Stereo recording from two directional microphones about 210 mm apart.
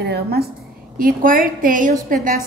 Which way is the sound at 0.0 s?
50° right (ahead or behind).